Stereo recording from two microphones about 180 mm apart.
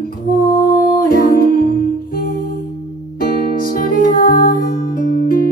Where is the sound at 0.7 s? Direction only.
50° left (ahead or behind).